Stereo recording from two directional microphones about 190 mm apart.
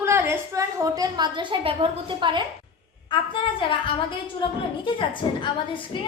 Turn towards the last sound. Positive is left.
turn(degrees=25)  # may be behind; listen again after turning